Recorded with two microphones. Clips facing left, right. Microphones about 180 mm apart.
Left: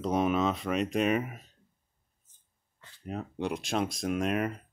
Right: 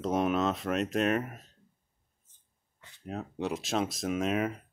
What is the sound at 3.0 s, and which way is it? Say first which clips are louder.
Speech: left 1 dB; centre (ahead or behind).